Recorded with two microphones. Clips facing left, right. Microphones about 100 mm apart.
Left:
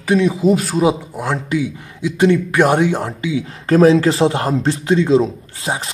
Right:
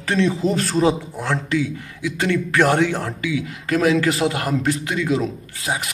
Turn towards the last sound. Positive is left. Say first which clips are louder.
# left 2 dB
turn(degrees=25)  # may be behind; listen again after turning